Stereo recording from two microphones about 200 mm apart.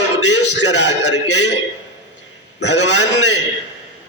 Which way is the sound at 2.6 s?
60° left (ahead or behind).